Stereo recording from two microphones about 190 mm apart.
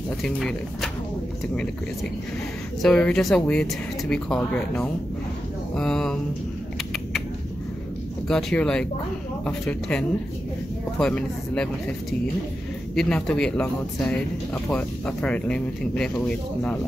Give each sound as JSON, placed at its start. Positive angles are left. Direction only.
{"t": 0.2, "sound": "speech", "side_deg": 0}
{"t": 2.8, "sound": "speech", "side_deg": 5}
{"t": 6.9, "sound": "typing", "side_deg": 0}
{"t": 8.3, "sound": "speech", "side_deg": 0}